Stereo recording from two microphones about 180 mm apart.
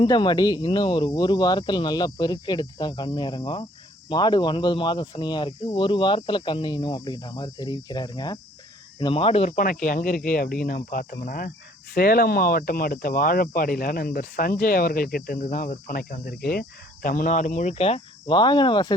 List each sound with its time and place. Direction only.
0.0 s speech: 25° left (ahead or behind)
9.6 s speech: 50° left (ahead or behind); by 18.9 s 25° left (ahead or behind)